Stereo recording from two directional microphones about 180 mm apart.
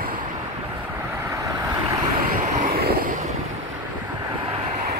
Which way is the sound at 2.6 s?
55° right (ahead or behind).